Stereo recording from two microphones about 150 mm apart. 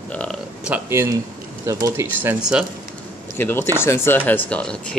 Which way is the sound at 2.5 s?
5° right (ahead or behind).